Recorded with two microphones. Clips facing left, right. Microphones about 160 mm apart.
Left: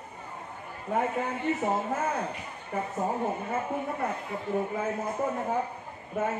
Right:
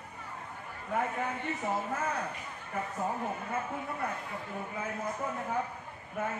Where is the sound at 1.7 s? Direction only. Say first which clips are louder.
Left 4 dB; 25° left (ahead or behind).